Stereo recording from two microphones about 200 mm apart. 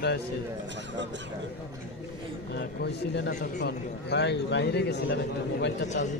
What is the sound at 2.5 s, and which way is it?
Speech, 55° left (ahead or behind).